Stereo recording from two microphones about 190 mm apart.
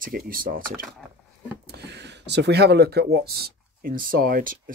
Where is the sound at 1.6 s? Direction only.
60° right (ahead or behind).